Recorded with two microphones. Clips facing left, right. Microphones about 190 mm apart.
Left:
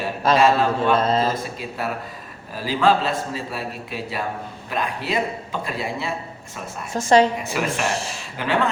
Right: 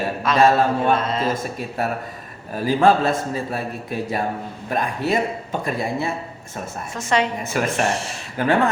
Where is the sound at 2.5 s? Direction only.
50° right (ahead or behind).